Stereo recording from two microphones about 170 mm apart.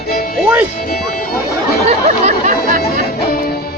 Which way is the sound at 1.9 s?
45° right (ahead or behind).